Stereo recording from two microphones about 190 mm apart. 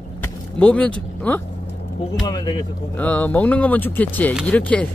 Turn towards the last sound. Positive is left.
turn(degrees=5)  # may be behind; listen again after turning